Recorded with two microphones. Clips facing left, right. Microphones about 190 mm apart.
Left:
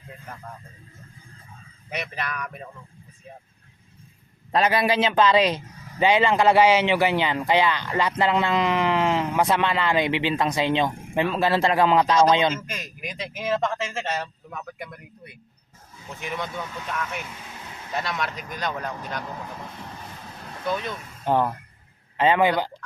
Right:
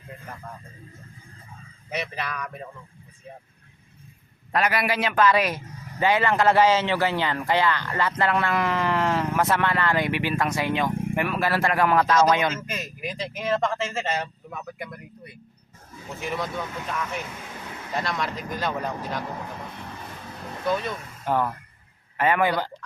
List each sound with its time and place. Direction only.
1.9 s speech: centre (ahead or behind)
4.5 s speech: 25° left (ahead or behind)
12.7 s speech: 5° right (ahead or behind)
16.3 s speech: centre (ahead or behind)
20.7 s speech: centre (ahead or behind)
21.2 s a man's voice: 25° left (ahead or behind)